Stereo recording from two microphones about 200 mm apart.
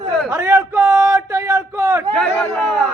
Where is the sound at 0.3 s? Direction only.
15° right (ahead or behind).